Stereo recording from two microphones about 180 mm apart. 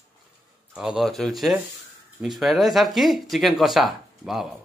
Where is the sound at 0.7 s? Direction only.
5° right (ahead or behind).